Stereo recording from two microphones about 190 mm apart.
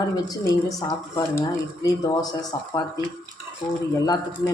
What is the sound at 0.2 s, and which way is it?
Speech, 20° left (ahead or behind).